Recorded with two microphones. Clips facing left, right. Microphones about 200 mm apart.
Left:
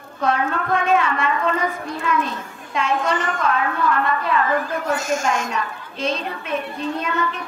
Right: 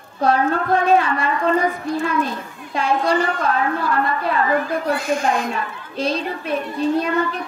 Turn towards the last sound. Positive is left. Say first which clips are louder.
# right 5 dB
turn(degrees=-35)  # may be behind; listen again after turning